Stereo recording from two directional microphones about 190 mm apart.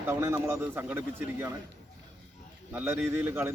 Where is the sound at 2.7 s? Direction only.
10° right (ahead or behind).